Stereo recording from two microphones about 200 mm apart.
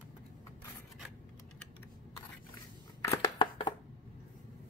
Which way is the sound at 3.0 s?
20° left (ahead or behind).